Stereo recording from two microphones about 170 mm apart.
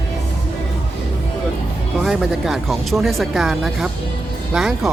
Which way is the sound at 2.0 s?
Centre (ahead or behind).